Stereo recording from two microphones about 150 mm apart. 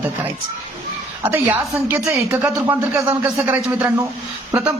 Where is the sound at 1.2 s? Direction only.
15° right (ahead or behind).